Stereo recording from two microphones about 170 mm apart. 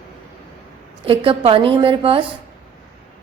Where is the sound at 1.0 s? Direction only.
30° right (ahead or behind).